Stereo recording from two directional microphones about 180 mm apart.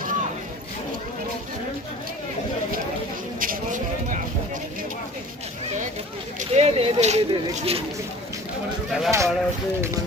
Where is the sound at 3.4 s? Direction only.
50° right (ahead or behind).